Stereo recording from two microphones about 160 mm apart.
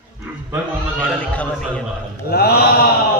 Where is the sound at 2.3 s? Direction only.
75° left (ahead or behind).